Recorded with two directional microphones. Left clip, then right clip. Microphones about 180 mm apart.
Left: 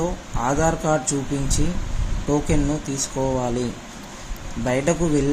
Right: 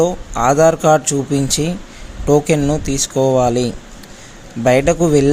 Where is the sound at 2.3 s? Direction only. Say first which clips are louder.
Right 9 dB; 55° right (ahead or behind).